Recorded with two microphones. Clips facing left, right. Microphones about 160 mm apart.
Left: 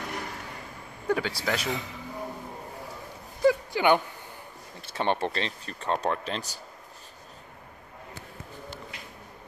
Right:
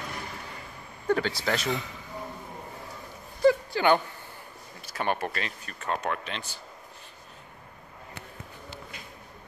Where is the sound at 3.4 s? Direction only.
15° left (ahead or behind).